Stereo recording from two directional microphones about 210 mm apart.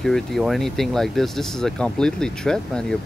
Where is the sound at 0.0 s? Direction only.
Centre (ahead or behind).